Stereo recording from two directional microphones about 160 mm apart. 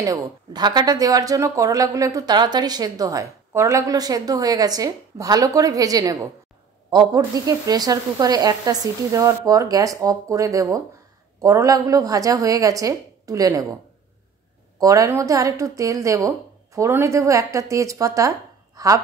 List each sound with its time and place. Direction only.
0.0 s speech: 25° right (ahead or behind)
14.8 s speech: 20° right (ahead or behind)